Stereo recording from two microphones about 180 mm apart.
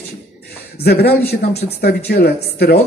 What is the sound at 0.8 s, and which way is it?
Speech, 60° left (ahead or behind).